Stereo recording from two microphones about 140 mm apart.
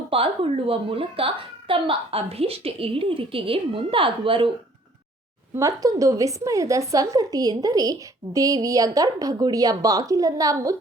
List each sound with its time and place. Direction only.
0.1 s a woman's voice: 40° right (ahead or behind)
5.5 s a woman's voice: 25° right (ahead or behind)